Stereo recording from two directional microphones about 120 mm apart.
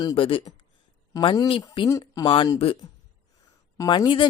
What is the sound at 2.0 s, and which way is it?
Speech, 30° left (ahead or behind).